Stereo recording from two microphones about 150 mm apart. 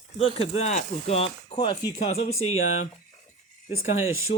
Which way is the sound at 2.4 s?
50° left (ahead or behind).